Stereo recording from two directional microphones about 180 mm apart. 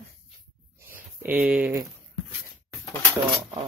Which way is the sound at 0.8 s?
10° right (ahead or behind).